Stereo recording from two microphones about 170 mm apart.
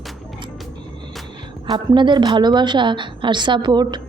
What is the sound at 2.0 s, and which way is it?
A woman's voice, 25° right (ahead or behind).